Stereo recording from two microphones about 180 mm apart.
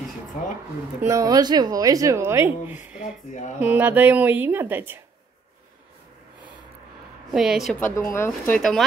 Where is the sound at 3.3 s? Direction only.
40° left (ahead or behind).